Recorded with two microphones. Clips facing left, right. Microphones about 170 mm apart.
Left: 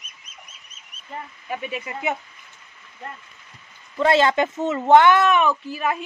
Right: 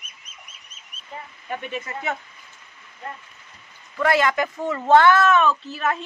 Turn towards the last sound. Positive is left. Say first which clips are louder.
# even
turn(degrees=10)  # may be behind; listen again after turning